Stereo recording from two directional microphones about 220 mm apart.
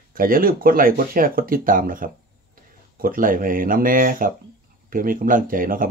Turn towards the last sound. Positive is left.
turn(degrees=-40)  # may be behind; listen again after turning